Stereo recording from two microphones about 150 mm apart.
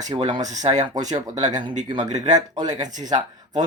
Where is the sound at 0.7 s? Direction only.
55° right (ahead or behind).